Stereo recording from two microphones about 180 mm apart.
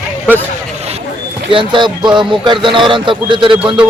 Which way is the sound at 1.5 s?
25° right (ahead or behind).